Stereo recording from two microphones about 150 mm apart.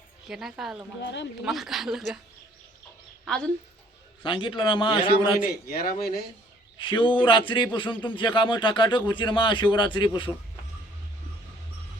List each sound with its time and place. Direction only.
0.3 s speech: centre (ahead or behind)
3.2 s a woman's voice: 5° left (ahead or behind)
4.2 s speech: 35° left (ahead or behind)
5.4 s a man's voice: 75° left (ahead or behind)
6.0 s speech: 90° left
6.7 s speech: 35° left (ahead or behind)